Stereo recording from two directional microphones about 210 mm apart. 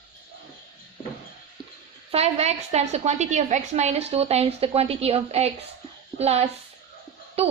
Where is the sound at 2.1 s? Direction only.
30° right (ahead or behind).